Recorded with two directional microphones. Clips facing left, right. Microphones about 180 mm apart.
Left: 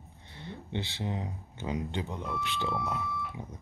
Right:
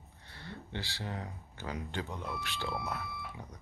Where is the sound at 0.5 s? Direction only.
20° left (ahead or behind).